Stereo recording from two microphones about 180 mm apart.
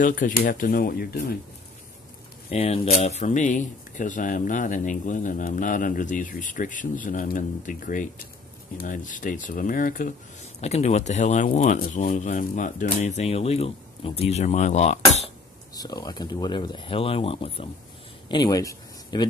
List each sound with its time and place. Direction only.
0.0 s speech: 50° left (ahead or behind)
2.5 s speech: 35° left (ahead or behind)
10.6 s speech: 35° left (ahead or behind)
15.7 s speech: 20° left (ahead or behind)
18.3 s speech: 20° left (ahead or behind)